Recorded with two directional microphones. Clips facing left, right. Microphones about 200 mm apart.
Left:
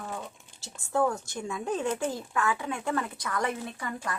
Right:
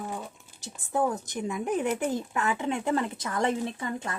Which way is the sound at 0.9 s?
20° right (ahead or behind).